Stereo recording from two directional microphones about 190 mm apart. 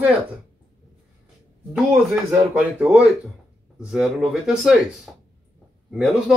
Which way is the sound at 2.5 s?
5° right (ahead or behind).